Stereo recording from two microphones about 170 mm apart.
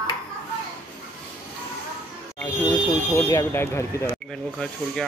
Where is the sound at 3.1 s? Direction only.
15° left (ahead or behind).